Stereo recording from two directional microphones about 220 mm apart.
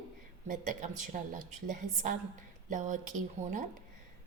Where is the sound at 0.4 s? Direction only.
35° right (ahead or behind).